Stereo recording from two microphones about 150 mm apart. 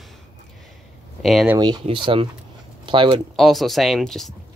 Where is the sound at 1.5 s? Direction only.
30° right (ahead or behind).